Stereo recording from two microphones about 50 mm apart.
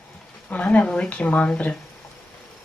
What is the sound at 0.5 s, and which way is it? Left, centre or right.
Speech, left.